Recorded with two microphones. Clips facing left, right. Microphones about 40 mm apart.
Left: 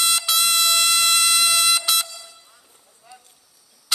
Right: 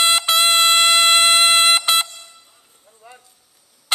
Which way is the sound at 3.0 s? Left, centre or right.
Right.